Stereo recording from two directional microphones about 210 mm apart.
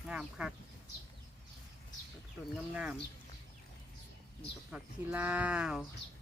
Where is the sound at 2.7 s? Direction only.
5° right (ahead or behind).